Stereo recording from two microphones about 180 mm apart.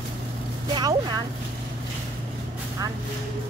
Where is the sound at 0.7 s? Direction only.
25° right (ahead or behind).